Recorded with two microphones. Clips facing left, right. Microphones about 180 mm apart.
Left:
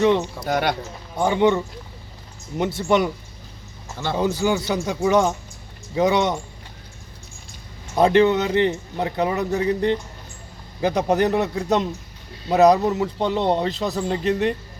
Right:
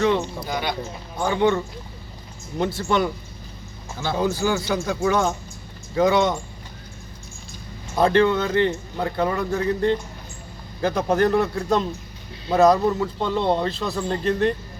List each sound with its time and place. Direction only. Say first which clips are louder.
0.4 s speech: left 5 dB; 70° left (ahead or behind)
1.2 s speech: left 2 dB; 20° left (ahead or behind)
3.9 s speech: left 1 dB; 5° right (ahead or behind)
4.4 s speech: left 1 dB; 20° left (ahead or behind)
7.9 s speech: left 2 dB; 20° left (ahead or behind)